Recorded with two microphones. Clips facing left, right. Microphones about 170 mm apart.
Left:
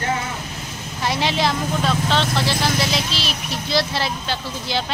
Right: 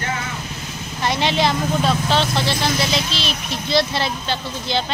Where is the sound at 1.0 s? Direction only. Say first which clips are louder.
Right 2 dB; 5° left (ahead or behind).